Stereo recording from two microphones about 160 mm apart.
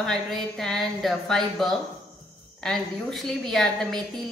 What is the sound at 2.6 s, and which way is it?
A woman's voice, centre (ahead or behind).